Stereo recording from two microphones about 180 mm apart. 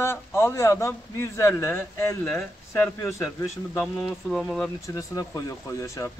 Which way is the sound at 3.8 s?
Centre (ahead or behind).